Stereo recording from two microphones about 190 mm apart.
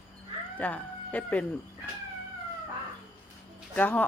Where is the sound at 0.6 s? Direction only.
10° left (ahead or behind).